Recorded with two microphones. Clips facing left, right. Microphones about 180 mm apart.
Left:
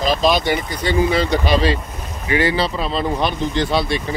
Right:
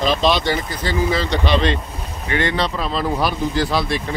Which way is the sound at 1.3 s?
5° left (ahead or behind).